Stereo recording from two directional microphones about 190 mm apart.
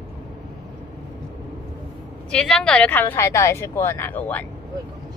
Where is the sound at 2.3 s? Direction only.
5° left (ahead or behind).